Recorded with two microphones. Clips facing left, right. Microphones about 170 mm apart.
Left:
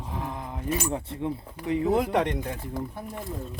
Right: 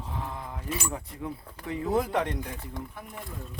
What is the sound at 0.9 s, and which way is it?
Speech, 25° left (ahead or behind).